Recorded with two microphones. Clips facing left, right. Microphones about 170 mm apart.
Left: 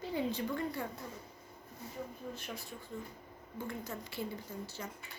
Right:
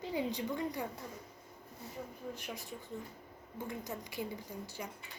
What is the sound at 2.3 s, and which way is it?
A woman's voice, 15° right (ahead or behind).